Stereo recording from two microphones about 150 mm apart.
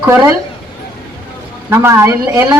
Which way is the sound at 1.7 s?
15° right (ahead or behind).